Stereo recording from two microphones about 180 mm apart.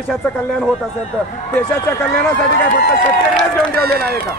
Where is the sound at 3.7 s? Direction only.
60° right (ahead or behind).